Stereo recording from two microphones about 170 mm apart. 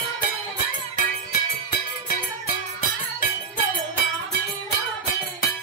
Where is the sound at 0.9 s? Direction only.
60° left (ahead or behind).